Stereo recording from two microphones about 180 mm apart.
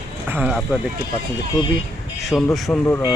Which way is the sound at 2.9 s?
20° left (ahead or behind).